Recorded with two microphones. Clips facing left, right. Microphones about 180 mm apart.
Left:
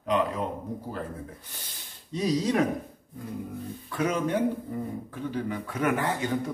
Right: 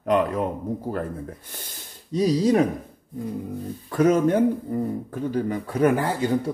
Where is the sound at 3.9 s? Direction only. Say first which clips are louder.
Right 8 dB; 45° right (ahead or behind).